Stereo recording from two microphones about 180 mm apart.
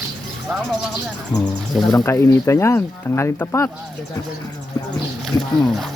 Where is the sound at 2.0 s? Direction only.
15° left (ahead or behind).